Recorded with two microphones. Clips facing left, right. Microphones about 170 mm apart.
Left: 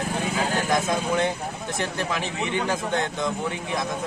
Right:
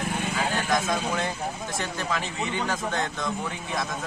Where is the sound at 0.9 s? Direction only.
25° left (ahead or behind).